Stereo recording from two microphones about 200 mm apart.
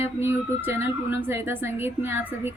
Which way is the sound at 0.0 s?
10° right (ahead or behind).